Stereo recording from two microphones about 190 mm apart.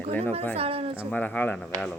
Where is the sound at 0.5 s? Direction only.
30° right (ahead or behind).